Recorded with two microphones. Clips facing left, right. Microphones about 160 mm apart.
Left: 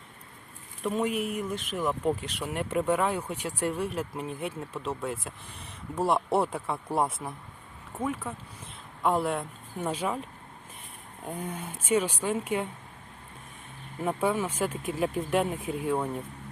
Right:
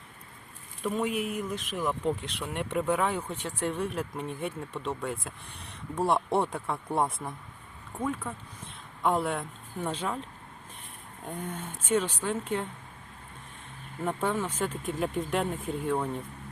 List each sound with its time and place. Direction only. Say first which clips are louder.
0.8 s speech: left 1 dB; centre (ahead or behind)
11.3 s speech: left 1 dB; 10° left (ahead or behind)
14.0 s speech: left 2 dB; 10° left (ahead or behind)